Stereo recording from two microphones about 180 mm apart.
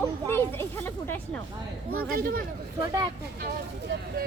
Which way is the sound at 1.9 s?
55° right (ahead or behind).